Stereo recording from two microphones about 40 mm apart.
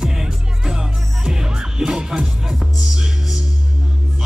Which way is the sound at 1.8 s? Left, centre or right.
Centre.